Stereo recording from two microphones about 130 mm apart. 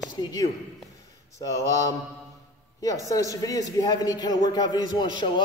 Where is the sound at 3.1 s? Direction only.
25° left (ahead or behind).